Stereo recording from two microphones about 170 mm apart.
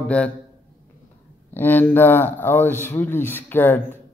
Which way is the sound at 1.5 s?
10° left (ahead or behind).